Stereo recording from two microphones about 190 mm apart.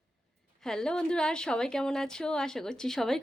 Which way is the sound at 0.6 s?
5° left (ahead or behind).